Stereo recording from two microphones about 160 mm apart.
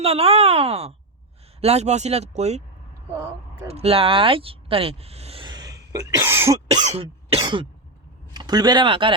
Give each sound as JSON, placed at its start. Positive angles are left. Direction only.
{"t": 0.0, "sound": "speech", "side_deg": -40}
{"t": 3.2, "sound": "speech", "side_deg": -15}
{"t": 3.7, "sound": "speech", "side_deg": -40}
{"t": 6.8, "sound": "cough", "side_deg": -40}
{"t": 8.3, "sound": "speech", "side_deg": -25}